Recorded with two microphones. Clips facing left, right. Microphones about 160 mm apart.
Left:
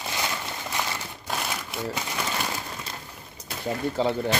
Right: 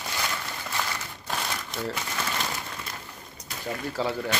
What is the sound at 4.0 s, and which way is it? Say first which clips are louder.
Speech: left 3 dB; 25° left (ahead or behind).